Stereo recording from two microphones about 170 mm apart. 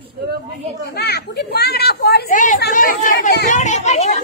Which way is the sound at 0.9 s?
70° left (ahead or behind).